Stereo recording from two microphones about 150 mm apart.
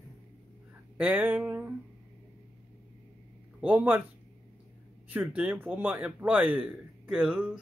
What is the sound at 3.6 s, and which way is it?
Speech, 10° right (ahead or behind).